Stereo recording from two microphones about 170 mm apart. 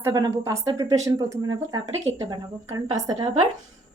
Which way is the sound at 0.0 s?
25° right (ahead or behind).